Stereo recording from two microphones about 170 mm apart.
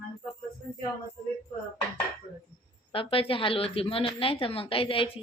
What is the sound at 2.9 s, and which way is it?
Speech, 30° left (ahead or behind).